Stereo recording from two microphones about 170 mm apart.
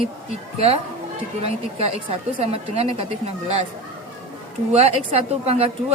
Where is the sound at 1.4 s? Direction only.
35° right (ahead or behind).